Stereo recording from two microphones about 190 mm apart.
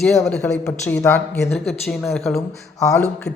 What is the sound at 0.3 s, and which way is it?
A man's voice, 5° left (ahead or behind).